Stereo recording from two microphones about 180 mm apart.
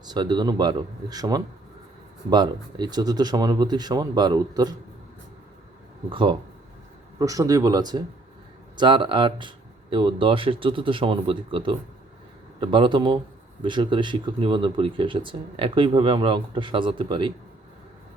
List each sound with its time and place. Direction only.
0.0 s speech: 25° right (ahead or behind)
6.1 s speech: 25° right (ahead or behind)